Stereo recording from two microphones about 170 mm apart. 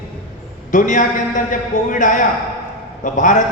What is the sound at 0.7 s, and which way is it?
A man's voice, 50° left (ahead or behind).